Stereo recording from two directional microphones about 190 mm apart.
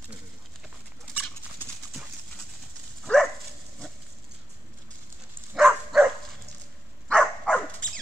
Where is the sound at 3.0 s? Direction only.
Centre (ahead or behind).